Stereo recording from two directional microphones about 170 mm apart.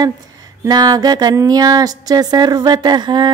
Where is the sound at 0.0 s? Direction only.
25° right (ahead or behind).